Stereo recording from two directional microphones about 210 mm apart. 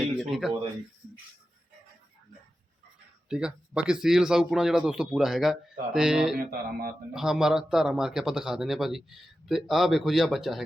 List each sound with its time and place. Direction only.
0.0 s a sound: centre (ahead or behind)
3.2 s speech: 5° right (ahead or behind)
6.5 s speech: 45° right (ahead or behind)
7.1 s speech: centre (ahead or behind)